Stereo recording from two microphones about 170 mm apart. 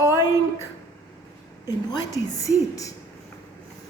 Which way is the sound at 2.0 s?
20° left (ahead or behind).